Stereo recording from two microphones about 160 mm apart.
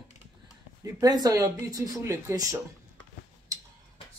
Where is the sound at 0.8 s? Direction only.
25° right (ahead or behind).